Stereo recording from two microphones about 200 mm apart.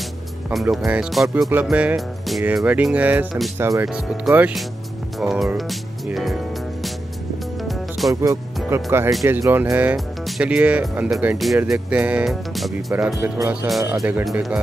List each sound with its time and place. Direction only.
0.5 s speech: centre (ahead or behind)
3.5 s speech: 15° right (ahead or behind)
3.9 s speech: 5° right (ahead or behind)
7.6 s music: centre (ahead or behind)
8.1 s speech: 15° right (ahead or behind)